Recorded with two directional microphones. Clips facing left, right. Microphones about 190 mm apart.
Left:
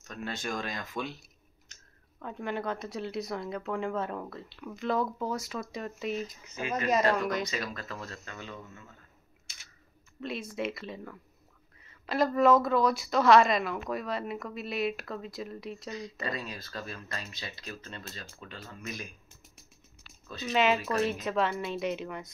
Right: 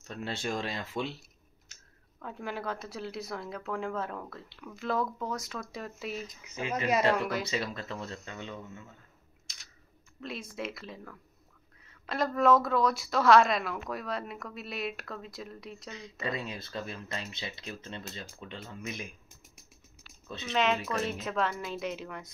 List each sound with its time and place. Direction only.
0.0 s speech: 30° right (ahead or behind)
2.1 s a woman's voice: centre (ahead or behind)
7.4 s speech: 25° right (ahead or behind)
9.5 s typing: 5° left (ahead or behind)
10.2 s a woman's voice: centre (ahead or behind)
16.2 s speech: 25° right (ahead or behind)
20.4 s a woman's voice: 5° left (ahead or behind)